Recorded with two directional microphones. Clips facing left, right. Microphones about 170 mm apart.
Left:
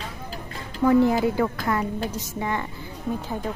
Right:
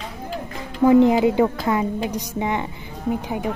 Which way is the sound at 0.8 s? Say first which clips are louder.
Right 4 dB; 20° right (ahead or behind).